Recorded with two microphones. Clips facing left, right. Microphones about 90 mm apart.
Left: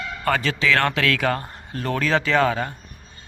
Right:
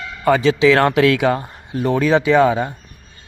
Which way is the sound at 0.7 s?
20° right (ahead or behind).